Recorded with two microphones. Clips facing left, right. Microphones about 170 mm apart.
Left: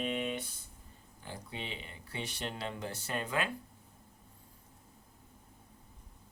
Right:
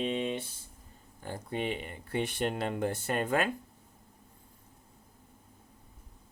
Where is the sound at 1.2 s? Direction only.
50° right (ahead or behind).